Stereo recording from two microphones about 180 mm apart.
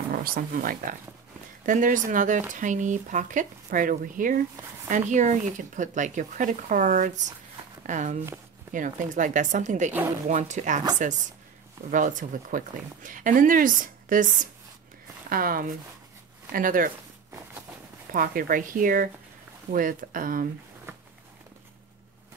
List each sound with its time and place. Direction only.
0.1 s speech: 55° right (ahead or behind)
18.1 s speech: 50° right (ahead or behind)
20.9 s a sound: 15° right (ahead or behind)